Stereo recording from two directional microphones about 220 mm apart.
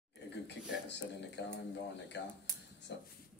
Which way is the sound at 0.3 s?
50° left (ahead or behind).